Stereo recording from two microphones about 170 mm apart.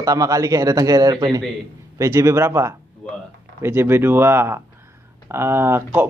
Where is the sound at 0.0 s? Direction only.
20° right (ahead or behind).